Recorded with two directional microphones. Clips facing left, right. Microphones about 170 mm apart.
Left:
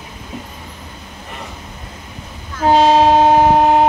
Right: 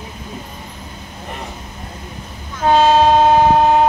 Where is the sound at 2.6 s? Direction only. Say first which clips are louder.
Left 1 dB; 10° left (ahead or behind).